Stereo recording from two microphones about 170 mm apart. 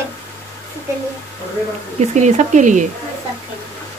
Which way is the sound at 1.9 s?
45° right (ahead or behind).